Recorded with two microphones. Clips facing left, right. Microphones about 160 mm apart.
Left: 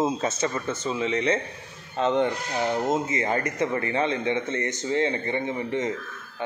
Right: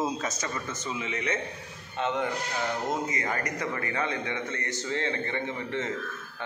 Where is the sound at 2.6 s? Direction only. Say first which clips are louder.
Left 7 dB; 20° left (ahead or behind).